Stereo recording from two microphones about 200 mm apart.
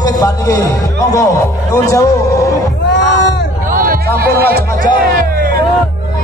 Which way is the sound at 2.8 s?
60° left (ahead or behind).